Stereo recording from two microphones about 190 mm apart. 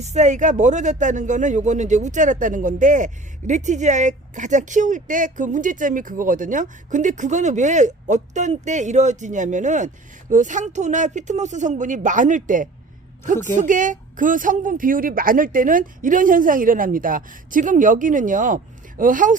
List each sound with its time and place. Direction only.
0.0 s speech: 35° right (ahead or behind)